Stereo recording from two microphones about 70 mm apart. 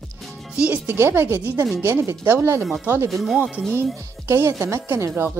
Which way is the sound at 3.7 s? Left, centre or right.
Right.